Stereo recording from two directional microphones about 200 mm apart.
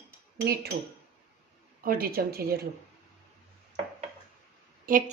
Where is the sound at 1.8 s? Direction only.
45° right (ahead or behind).